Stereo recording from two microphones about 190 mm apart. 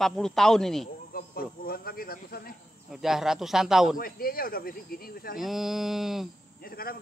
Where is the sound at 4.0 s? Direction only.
50° left (ahead or behind).